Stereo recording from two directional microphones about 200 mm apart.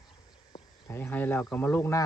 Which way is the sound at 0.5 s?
15° left (ahead or behind).